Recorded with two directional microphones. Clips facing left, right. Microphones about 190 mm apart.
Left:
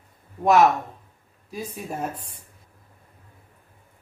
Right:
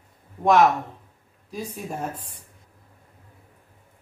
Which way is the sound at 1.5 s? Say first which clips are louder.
Even; 5° left (ahead or behind).